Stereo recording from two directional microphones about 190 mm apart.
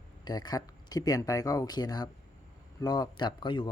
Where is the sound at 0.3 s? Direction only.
20° left (ahead or behind).